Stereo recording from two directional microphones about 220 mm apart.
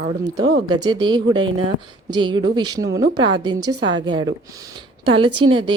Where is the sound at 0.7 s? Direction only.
20° right (ahead or behind).